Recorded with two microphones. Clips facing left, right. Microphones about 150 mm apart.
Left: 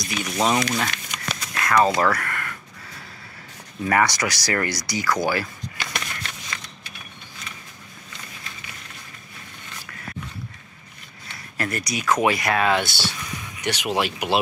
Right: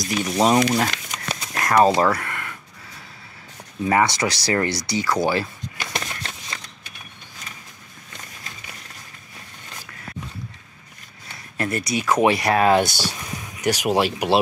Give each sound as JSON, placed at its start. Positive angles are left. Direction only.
{"t": 0.1, "sound": "speech", "side_deg": -35}
{"t": 1.5, "sound": "a sound", "side_deg": -40}
{"t": 1.8, "sound": "speech", "side_deg": -30}
{"t": 3.8, "sound": "speech", "side_deg": -25}
{"t": 11.5, "sound": "speech", "side_deg": -25}